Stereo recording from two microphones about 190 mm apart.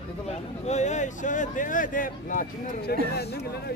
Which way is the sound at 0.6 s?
40° left (ahead or behind).